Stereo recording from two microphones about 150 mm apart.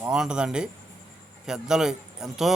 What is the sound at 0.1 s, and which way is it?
A man's voice, 5° right (ahead or behind).